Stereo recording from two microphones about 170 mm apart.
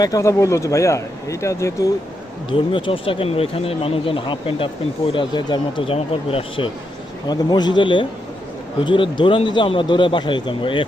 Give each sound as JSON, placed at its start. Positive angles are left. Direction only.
{"t": 0.0, "sound": "a man's voice", "side_deg": 20}
{"t": 2.5, "sound": "speech", "side_deg": 30}